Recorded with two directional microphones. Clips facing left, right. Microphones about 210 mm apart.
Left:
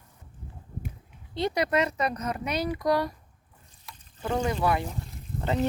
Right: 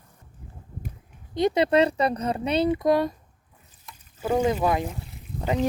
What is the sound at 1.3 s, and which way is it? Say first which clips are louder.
Speech: right 6 dB; 20° right (ahead or behind).